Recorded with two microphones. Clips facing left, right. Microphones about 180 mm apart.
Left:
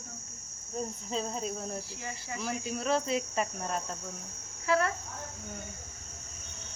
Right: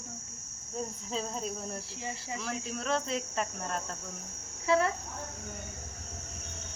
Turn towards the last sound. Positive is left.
turn(degrees=-25)  # may be behind; listen again after turning